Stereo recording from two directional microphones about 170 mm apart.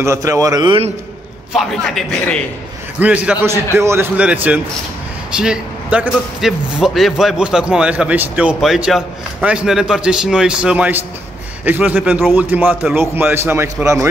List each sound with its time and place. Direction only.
0.0 s a man's voice: 15° right (ahead or behind)
1.5 s speech: centre (ahead or behind)
3.0 s a man's voice: 10° right (ahead or behind)